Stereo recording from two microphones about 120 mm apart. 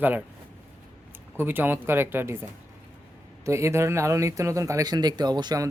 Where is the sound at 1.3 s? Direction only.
15° right (ahead or behind).